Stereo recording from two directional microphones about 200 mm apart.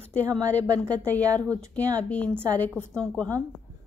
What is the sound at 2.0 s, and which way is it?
A woman's voice, 5° left (ahead or behind).